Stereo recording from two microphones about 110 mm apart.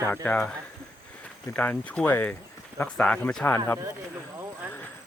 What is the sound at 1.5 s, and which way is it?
Speech, 15° left (ahead or behind).